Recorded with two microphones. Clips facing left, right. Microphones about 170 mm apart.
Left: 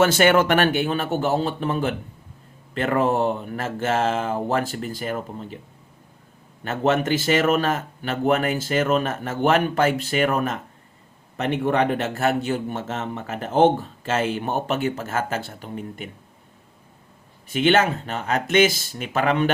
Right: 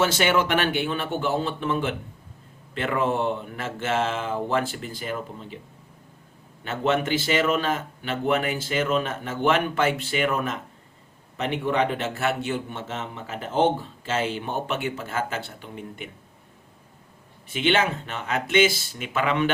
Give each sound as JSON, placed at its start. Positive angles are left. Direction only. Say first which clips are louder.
{"t": 0.0, "sound": "a man's voice", "louder": "left 5 dB", "side_deg": 50}
{"t": 6.7, "sound": "a man's voice", "louder": "left 3 dB", "side_deg": 40}
{"t": 17.5, "sound": "a man's voice", "louder": "left 4 dB", "side_deg": 45}